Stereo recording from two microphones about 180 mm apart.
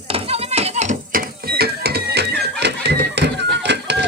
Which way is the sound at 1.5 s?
60° right (ahead or behind).